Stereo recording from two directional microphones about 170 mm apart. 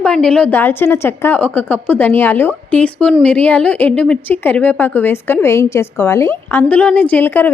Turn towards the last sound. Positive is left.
turn(degrees=10)  # may be behind; listen again after turning